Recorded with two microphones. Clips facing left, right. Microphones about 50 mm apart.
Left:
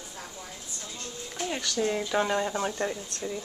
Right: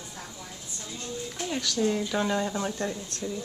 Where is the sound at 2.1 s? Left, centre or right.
Centre.